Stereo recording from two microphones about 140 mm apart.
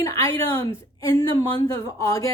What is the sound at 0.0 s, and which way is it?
A woman's voice, 25° left (ahead or behind).